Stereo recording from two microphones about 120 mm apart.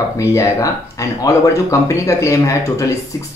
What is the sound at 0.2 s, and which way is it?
Speech, 25° left (ahead or behind).